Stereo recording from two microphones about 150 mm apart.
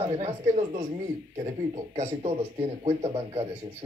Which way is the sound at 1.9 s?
50° right (ahead or behind).